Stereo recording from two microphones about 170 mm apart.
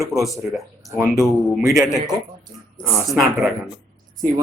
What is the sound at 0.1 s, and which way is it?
Speech, centre (ahead or behind).